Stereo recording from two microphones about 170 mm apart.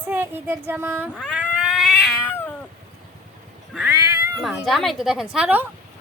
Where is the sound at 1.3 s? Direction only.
5° right (ahead or behind).